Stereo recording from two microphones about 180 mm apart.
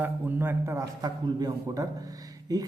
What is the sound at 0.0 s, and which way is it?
A man's voice, 10° right (ahead or behind).